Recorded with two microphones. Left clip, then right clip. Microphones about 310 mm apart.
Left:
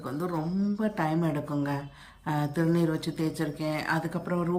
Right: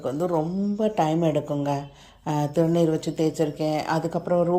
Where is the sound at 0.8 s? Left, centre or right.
Centre.